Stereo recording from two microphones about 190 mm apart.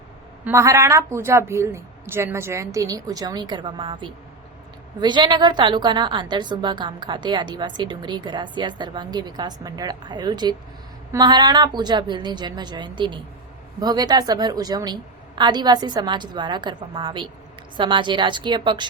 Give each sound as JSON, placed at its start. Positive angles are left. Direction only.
{"t": 0.4, "sound": "a woman's voice", "side_deg": -15}